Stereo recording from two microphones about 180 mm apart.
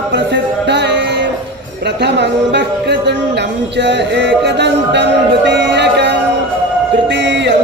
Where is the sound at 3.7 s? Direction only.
75° right (ahead or behind).